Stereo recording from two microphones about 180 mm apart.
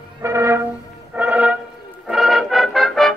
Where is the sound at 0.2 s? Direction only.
15° right (ahead or behind).